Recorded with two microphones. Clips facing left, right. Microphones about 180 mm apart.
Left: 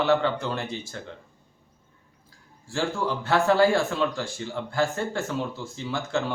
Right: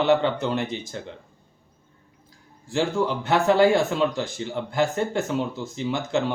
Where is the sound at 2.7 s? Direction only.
20° right (ahead or behind).